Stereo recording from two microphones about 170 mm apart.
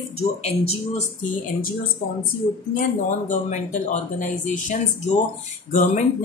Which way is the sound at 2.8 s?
45° left (ahead or behind).